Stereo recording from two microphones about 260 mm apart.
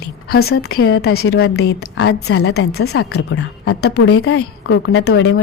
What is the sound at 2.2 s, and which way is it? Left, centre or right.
A woman's voice, left.